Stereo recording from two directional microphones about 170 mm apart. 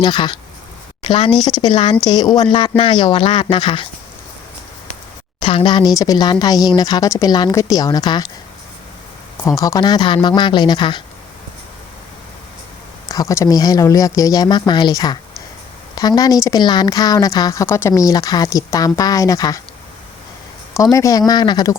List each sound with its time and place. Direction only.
0.0 s a woman's voice: 25° left (ahead or behind)
5.4 s speech: 30° left (ahead or behind)
9.6 s speech: 20° left (ahead or behind)
13.1 s speech: 20° left (ahead or behind)
20.7 s speech: 20° left (ahead or behind)